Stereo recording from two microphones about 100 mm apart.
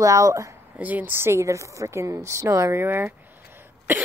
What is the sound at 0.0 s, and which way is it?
Speech, 35° right (ahead or behind).